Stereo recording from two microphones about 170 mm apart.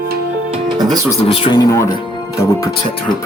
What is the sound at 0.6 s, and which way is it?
Music, 25° right (ahead or behind).